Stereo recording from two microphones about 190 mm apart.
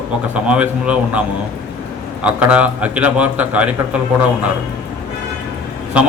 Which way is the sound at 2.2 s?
5° right (ahead or behind).